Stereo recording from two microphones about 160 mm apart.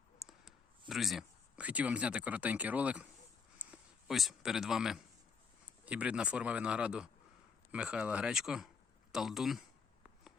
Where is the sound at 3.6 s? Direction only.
5° right (ahead or behind).